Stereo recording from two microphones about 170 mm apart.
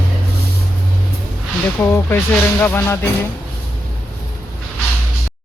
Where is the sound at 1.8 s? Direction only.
15° left (ahead or behind).